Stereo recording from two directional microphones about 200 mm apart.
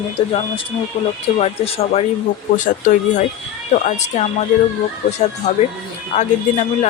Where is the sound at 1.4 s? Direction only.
30° left (ahead or behind).